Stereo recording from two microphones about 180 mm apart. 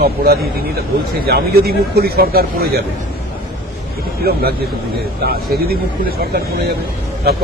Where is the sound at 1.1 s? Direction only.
60° right (ahead or behind).